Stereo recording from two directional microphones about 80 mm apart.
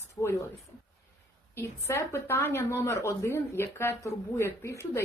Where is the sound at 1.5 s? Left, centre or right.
Left.